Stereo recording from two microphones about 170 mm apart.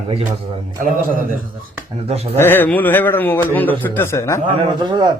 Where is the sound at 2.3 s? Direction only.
15° left (ahead or behind).